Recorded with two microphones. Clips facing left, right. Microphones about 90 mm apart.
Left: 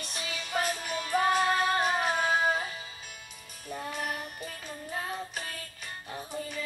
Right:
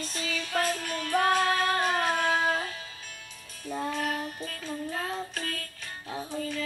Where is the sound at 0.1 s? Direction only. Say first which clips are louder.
Right 1 dB; 15° left (ahead or behind).